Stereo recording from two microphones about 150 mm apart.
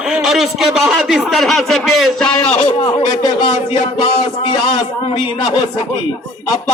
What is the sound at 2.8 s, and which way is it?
Speech, 30° left (ahead or behind).